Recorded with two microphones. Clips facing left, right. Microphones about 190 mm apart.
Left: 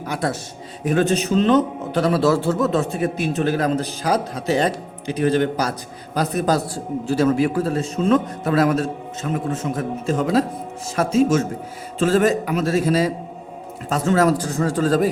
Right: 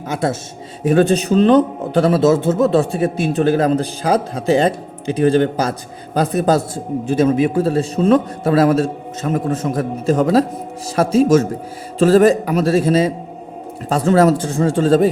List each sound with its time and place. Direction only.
0.1 s a man's voice: 25° right (ahead or behind)